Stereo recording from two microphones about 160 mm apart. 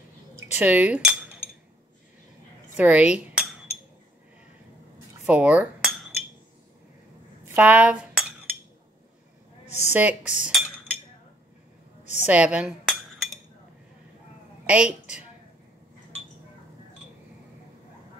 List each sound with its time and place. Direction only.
0.4 s speech: 10° right (ahead or behind)
2.7 s a woman's voice: 10° right (ahead or behind)
5.2 s speech: 10° right (ahead or behind)
7.5 s speech: 10° right (ahead or behind)
9.7 s speech: 45° left (ahead or behind)
9.9 s speech: 10° right (ahead or behind)
12.0 s a sound: 45° left (ahead or behind)
12.3 s speech: 5° right (ahead or behind)
14.7 s speech: 5° right (ahead or behind)